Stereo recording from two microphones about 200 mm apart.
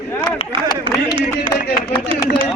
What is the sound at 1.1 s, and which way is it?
Speech, 20° left (ahead or behind).